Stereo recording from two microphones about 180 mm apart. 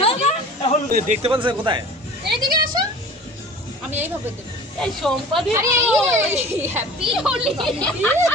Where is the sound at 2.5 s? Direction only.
25° right (ahead or behind).